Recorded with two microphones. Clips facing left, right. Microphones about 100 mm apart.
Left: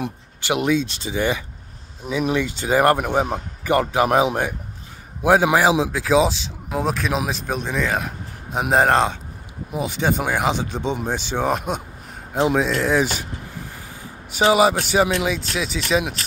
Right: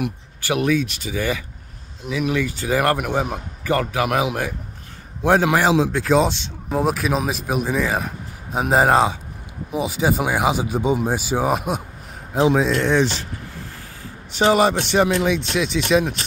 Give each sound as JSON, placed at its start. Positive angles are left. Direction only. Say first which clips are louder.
{"t": 0.0, "sound": "speech", "louder": "right 2 dB", "side_deg": 20}
{"t": 5.2, "sound": "speech", "louder": "left 1 dB", "side_deg": 15}
{"t": 14.3, "sound": "speech", "louder": "even", "side_deg": 5}